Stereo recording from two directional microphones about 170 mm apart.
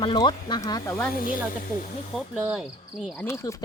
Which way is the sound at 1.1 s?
55° left (ahead or behind).